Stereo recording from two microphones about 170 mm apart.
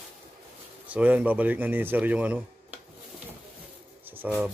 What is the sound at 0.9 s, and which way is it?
Speech, 10° right (ahead or behind).